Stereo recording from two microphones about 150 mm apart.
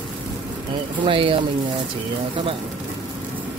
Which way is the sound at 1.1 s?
35° right (ahead or behind).